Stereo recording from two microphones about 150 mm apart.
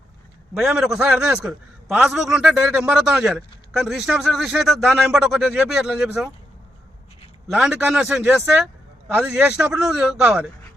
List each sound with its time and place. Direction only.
0.5 s a man's voice: 5° right (ahead or behind)
7.4 s a man's voice: 5° right (ahead or behind)